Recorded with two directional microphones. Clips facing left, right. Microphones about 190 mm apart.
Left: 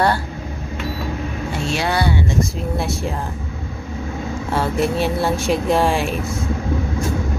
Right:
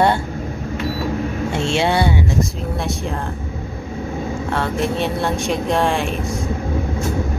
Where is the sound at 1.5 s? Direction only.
25° right (ahead or behind).